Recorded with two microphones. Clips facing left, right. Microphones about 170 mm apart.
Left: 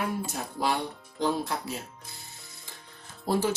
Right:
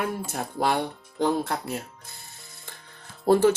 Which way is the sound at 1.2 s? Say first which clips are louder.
Right 4 dB; 55° right (ahead or behind).